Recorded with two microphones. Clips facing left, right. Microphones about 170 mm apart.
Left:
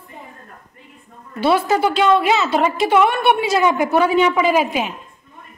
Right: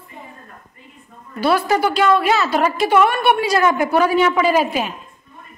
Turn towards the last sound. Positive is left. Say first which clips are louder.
# even
turn(degrees=20)  # may be behind; listen again after turning